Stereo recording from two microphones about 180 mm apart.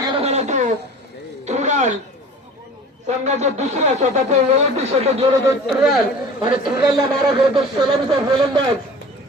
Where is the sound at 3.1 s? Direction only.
40° right (ahead or behind).